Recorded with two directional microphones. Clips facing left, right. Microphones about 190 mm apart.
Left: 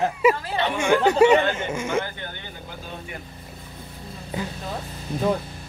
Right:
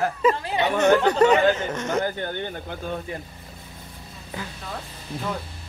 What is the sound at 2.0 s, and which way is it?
Speech, 45° right (ahead or behind).